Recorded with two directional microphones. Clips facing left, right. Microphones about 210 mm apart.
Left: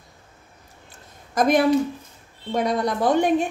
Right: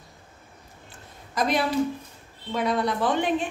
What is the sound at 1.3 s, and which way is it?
A woman's voice, 50° left (ahead or behind).